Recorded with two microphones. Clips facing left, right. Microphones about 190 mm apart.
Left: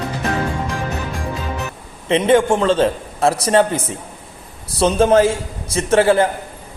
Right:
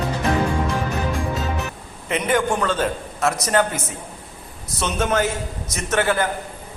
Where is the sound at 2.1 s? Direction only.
30° left (ahead or behind).